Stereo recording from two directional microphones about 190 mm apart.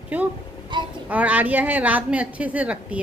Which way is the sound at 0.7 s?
25° right (ahead or behind).